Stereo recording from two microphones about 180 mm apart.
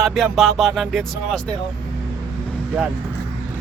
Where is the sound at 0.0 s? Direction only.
Centre (ahead or behind).